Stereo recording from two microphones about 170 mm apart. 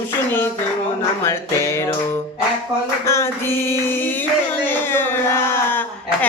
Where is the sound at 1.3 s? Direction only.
15° left (ahead or behind).